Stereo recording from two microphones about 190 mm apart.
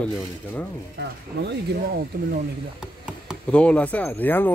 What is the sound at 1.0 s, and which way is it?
Speech, 65° right (ahead or behind).